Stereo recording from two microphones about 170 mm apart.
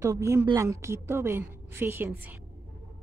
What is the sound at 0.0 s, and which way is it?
Speech, 15° right (ahead or behind).